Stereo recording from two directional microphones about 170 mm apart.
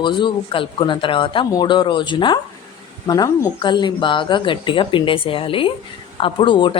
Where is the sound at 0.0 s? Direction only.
30° left (ahead or behind).